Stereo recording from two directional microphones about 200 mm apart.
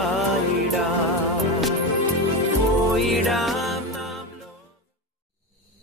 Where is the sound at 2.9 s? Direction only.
Centre (ahead or behind).